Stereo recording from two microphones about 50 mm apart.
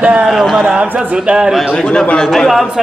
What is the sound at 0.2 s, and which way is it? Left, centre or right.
Speech, centre.